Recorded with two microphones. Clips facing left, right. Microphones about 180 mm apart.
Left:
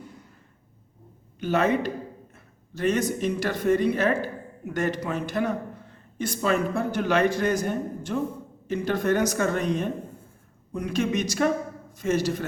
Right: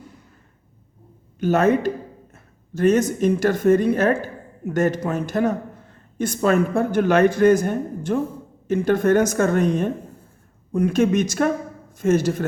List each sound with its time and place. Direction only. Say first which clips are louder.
1.4 s speech: right 5 dB; 45° right (ahead or behind)